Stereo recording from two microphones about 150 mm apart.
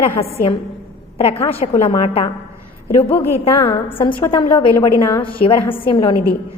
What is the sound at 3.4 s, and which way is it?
A woman's voice, 30° left (ahead or behind).